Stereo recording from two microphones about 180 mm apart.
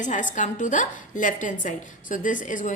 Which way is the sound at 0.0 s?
45° left (ahead or behind).